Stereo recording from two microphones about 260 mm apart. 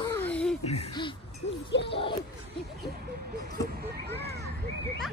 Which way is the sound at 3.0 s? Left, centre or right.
Right.